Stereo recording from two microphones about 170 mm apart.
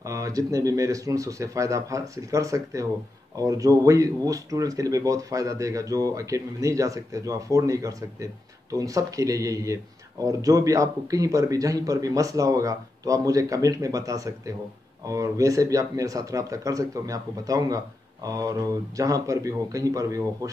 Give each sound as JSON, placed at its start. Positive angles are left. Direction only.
{"t": 0.0, "sound": "speech", "side_deg": -20}